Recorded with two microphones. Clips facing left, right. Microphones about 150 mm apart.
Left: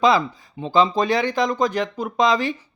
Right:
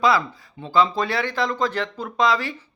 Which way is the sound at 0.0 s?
20° left (ahead or behind).